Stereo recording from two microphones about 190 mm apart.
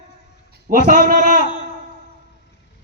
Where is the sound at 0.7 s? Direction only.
45° right (ahead or behind).